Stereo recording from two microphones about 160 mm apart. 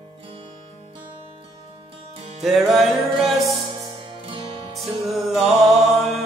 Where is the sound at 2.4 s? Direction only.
Centre (ahead or behind).